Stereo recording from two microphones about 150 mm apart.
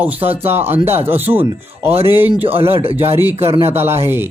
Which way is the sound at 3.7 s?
15° right (ahead or behind).